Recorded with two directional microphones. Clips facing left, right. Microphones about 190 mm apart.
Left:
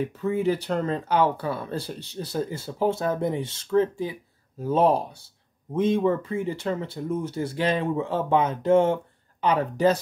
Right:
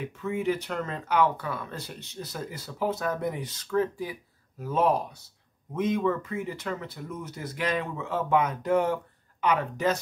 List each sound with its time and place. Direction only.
0.0 s speech: 35° left (ahead or behind)